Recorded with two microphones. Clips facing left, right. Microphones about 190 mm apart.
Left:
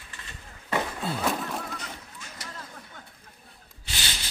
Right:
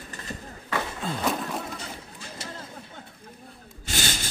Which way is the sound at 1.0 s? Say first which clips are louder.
Right 1 dB; 5° left (ahead or behind).